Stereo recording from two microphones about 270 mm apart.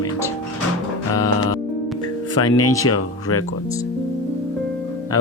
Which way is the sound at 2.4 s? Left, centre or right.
Left.